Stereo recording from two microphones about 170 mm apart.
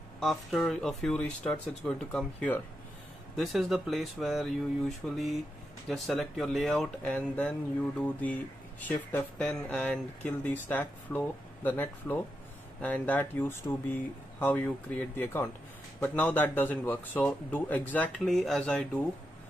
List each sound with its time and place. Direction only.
0.2 s a man's voice: centre (ahead or behind)